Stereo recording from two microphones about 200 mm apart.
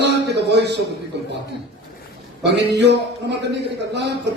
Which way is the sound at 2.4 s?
60° right (ahead or behind).